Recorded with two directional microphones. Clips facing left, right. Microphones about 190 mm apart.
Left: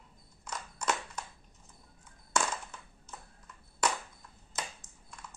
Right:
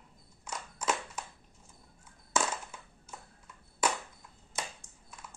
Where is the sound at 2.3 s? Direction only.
10° right (ahead or behind).